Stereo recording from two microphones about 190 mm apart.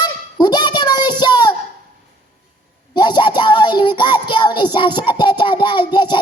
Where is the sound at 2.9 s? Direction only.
25° left (ahead or behind).